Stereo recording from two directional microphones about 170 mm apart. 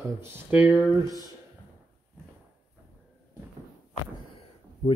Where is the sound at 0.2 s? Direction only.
10° right (ahead or behind).